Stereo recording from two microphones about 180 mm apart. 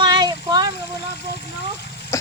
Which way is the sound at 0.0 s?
25° right (ahead or behind).